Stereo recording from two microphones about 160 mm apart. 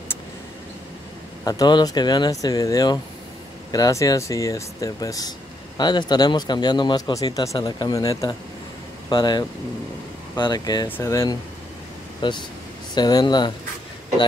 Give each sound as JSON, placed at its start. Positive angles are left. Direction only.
{"t": 1.4, "sound": "a man's voice", "side_deg": 25}
{"t": 12.2, "sound": "a man's voice", "side_deg": 30}